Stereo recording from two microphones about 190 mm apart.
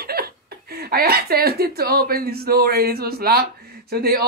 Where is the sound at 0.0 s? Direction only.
55° right (ahead or behind).